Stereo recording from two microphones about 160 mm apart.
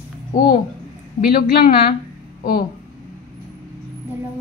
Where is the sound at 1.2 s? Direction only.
65° left (ahead or behind).